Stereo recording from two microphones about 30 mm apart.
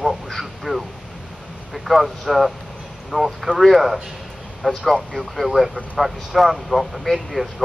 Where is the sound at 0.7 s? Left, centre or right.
Right.